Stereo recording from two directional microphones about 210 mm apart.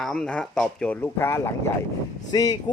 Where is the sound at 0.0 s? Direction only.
5° left (ahead or behind).